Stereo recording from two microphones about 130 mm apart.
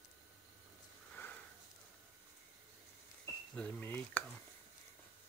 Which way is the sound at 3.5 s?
10° left (ahead or behind).